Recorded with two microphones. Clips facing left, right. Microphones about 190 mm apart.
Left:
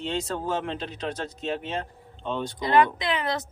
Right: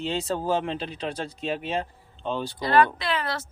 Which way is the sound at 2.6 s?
20° left (ahead or behind).